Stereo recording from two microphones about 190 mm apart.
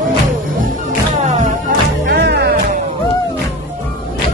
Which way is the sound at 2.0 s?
60° right (ahead or behind).